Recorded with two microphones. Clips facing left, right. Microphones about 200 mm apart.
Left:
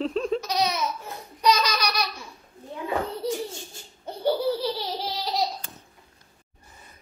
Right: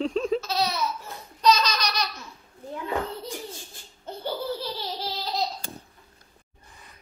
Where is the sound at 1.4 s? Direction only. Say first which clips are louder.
Right 1 dB; 10° left (ahead or behind).